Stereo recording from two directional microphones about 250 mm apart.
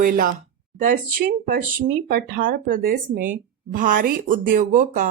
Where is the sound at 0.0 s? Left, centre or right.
Right.